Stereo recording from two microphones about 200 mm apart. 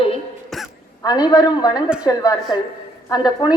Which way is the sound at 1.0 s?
20° left (ahead or behind).